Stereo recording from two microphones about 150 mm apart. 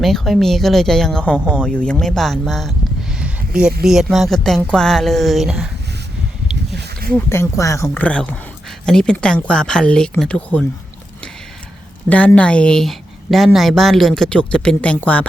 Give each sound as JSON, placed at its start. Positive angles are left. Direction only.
{"t": 0.0, "sound": "a woman's voice", "side_deg": 0}
{"t": 7.3, "sound": "speech", "side_deg": 20}
{"t": 8.0, "sound": "a woman's voice", "side_deg": 5}
{"t": 12.0, "sound": "a woman's voice", "side_deg": 10}